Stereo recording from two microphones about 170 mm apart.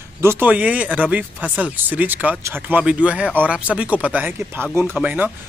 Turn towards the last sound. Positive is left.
turn(degrees=-10)  # may be behind; listen again after turning